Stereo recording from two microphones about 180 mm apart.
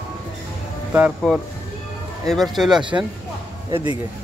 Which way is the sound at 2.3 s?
Centre (ahead or behind).